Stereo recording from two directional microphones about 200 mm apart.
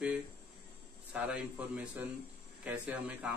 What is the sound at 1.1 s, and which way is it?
A man's voice, 5° right (ahead or behind).